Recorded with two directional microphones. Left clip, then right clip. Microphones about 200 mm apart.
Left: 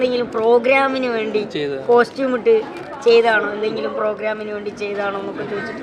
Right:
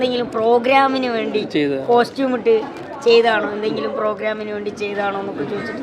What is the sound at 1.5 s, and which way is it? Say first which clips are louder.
Speech: right 4 dB; 30° right (ahead or behind).